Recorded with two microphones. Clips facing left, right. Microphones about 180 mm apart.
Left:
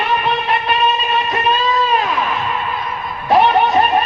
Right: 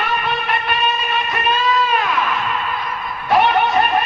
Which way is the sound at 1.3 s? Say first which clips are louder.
Even; 35° left (ahead or behind).